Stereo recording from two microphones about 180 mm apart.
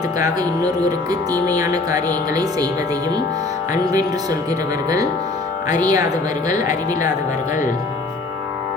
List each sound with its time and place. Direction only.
0.2 s speech: 20° right (ahead or behind)
5.6 s speech: 20° right (ahead or behind)